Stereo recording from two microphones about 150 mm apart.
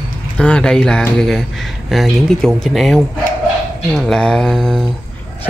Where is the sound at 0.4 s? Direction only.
5° left (ahead or behind).